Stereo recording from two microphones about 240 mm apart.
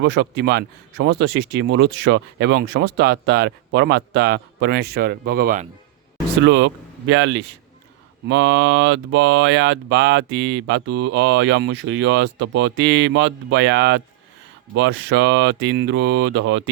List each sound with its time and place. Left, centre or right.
0.0 s speech: right
6.4 s speech: right